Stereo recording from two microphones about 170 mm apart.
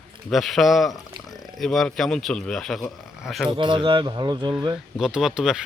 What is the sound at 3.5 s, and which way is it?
Speech, 30° right (ahead or behind).